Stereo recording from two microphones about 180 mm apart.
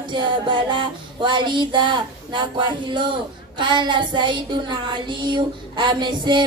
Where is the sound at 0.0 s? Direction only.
25° right (ahead or behind).